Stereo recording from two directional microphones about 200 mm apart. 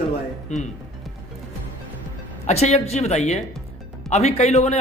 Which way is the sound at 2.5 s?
35° left (ahead or behind).